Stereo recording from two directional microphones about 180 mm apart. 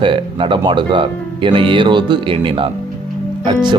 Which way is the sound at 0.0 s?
30° right (ahead or behind).